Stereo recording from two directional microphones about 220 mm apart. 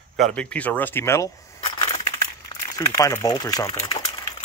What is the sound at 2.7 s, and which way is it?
Speech, 15° left (ahead or behind).